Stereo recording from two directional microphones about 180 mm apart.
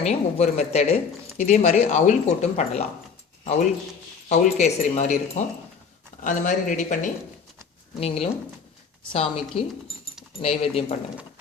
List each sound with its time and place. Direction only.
0.0 s speech: 40° left (ahead or behind)
4.3 s speech: 40° left (ahead or behind)